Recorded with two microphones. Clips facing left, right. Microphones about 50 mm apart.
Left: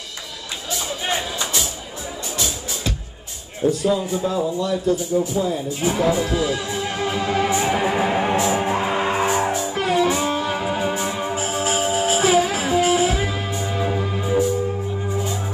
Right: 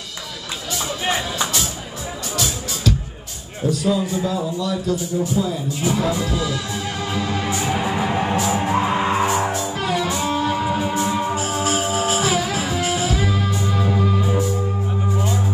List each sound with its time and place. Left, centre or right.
3.7 s a man's voice: left
6.3 s music: left
8.1 s music: centre
9.8 s music: left